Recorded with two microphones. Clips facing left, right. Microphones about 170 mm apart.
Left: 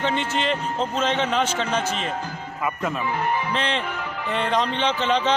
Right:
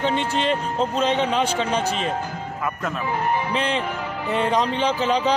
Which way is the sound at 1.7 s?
35° right (ahead or behind).